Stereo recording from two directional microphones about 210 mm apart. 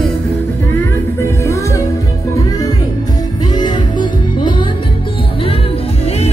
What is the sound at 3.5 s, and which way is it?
Music, 20° left (ahead or behind).